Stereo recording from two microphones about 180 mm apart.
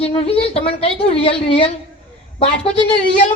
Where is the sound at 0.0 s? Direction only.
35° left (ahead or behind).